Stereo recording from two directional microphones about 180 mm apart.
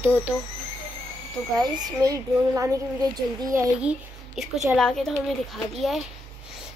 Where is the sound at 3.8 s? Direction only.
5° right (ahead or behind).